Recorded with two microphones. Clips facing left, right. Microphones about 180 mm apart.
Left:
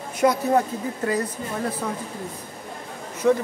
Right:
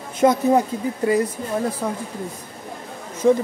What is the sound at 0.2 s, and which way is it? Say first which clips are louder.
Speech: right 3 dB; 20° right (ahead or behind).